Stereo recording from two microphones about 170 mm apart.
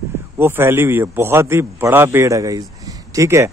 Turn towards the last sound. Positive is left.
turn(degrees=-15)  # may be behind; listen again after turning